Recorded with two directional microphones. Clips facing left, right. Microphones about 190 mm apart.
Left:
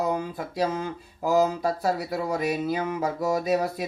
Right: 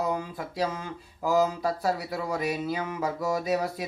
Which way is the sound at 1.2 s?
25° left (ahead or behind).